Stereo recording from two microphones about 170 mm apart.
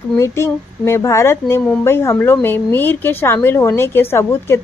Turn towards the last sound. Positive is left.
turn(degrees=15)  # may be behind; listen again after turning